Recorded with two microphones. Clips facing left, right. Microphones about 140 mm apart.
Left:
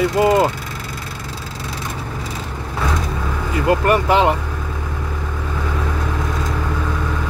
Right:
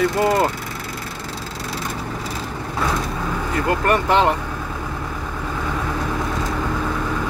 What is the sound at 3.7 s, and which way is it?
Speech, 10° left (ahead or behind).